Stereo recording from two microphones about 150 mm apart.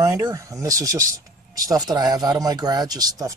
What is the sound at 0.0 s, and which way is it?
Speech, 25° right (ahead or behind).